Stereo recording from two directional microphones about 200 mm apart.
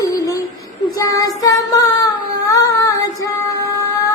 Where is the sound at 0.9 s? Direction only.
15° left (ahead or behind).